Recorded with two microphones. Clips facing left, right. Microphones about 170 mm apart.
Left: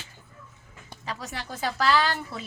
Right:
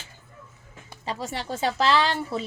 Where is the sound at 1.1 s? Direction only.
30° right (ahead or behind).